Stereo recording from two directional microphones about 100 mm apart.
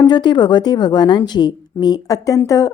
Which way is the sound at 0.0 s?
50° left (ahead or behind).